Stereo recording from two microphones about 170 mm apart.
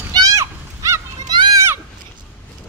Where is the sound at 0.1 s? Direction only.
20° right (ahead or behind).